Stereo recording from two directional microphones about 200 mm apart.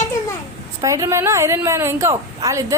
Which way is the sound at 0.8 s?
15° right (ahead or behind).